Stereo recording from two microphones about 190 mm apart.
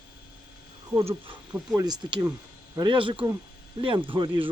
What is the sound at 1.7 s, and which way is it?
Speech, 20° right (ahead or behind).